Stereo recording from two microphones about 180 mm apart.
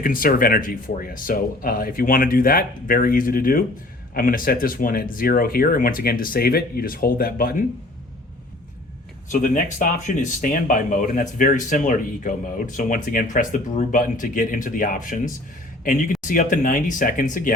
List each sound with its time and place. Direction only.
0.0 s speech: 50° left (ahead or behind)
9.3 s speech: 45° left (ahead or behind)